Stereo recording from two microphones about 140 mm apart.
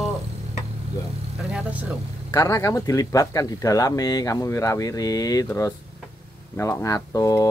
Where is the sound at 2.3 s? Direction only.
25° left (ahead or behind).